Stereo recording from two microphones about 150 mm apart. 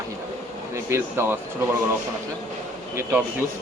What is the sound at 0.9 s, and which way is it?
Speech, 15° right (ahead or behind).